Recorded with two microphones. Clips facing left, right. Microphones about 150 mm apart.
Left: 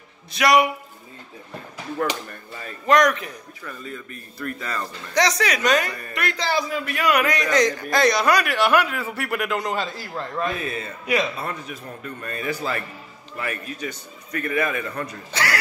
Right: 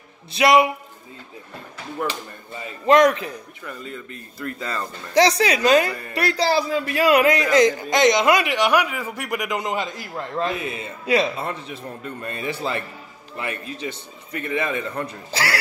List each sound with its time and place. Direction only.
0.3 s speech: 25° right (ahead or behind)
2.2 s speech: 25° right (ahead or behind)